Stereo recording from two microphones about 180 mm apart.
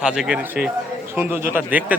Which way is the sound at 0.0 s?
5° right (ahead or behind).